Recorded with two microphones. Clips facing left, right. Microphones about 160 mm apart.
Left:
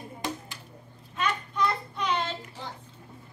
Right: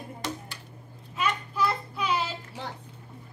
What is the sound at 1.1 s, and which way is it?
Child singing, 5° right (ahead or behind).